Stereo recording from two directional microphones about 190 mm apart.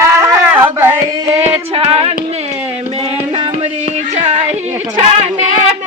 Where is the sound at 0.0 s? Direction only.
15° right (ahead or behind).